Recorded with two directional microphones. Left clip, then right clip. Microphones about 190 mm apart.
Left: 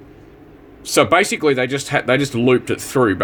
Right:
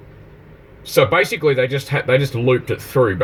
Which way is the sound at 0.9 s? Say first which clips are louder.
Left 1 dB; 30° left (ahead or behind).